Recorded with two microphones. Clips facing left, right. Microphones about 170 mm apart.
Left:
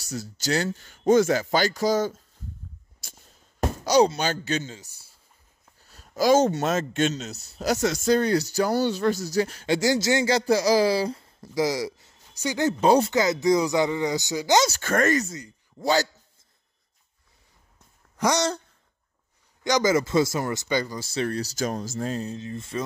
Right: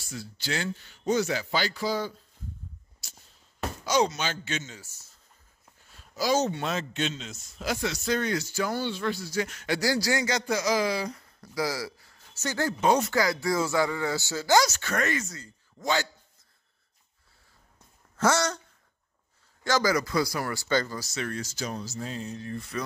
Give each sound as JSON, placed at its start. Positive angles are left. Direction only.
{"t": 0.0, "sound": "speech", "side_deg": 40}
{"t": 3.0, "sound": "a sound", "side_deg": 50}
{"t": 3.6, "sound": "speech", "side_deg": 35}
{"t": 4.7, "sound": "speech", "side_deg": 15}
{"t": 5.9, "sound": "a man's voice", "side_deg": 45}
{"t": 12.8, "sound": "a man's voice", "side_deg": 30}
{"t": 13.1, "sound": "speech", "side_deg": 20}
{"t": 14.7, "sound": "a man's voice", "side_deg": 45}
{"t": 18.1, "sound": "speech", "side_deg": 15}
{"t": 19.6, "sound": "speech", "side_deg": 20}
{"t": 21.0, "sound": "a man's voice", "side_deg": 30}
{"t": 22.3, "sound": "speech", "side_deg": 25}